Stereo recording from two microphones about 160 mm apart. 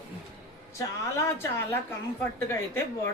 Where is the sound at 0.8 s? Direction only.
20° left (ahead or behind).